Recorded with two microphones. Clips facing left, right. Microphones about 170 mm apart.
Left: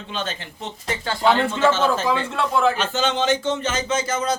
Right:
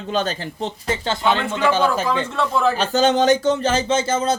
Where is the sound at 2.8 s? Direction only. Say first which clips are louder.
Right 5 dB; 40° right (ahead or behind).